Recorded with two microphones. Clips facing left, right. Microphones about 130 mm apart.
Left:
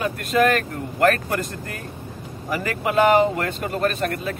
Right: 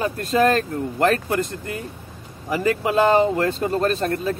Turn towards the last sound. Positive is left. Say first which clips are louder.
# right 2 dB
turn(degrees=-30)  # may be behind; listen again after turning